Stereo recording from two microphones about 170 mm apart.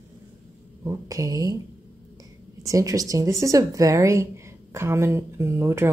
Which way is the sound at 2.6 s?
20° right (ahead or behind).